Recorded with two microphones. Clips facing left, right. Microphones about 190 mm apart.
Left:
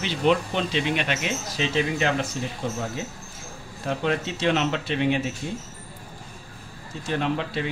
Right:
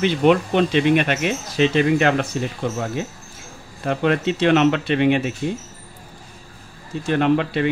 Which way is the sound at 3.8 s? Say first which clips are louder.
Right 6 dB; 60° right (ahead or behind).